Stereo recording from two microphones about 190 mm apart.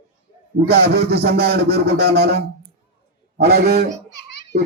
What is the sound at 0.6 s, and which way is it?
A man's voice, 55° right (ahead or behind).